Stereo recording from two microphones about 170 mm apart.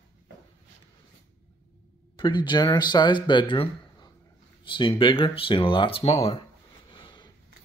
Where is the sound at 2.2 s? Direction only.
25° left (ahead or behind).